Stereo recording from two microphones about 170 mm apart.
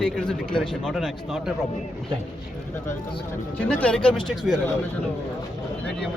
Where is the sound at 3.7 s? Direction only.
5° left (ahead or behind).